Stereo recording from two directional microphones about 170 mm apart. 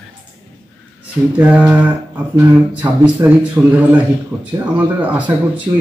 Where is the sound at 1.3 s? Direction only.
10° right (ahead or behind).